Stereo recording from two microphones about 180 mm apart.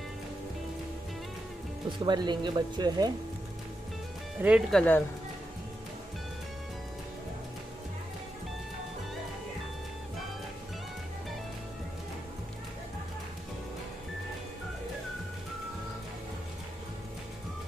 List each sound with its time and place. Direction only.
1.9 s speech: 25° right (ahead or behind)
4.4 s speech: 5° right (ahead or behind)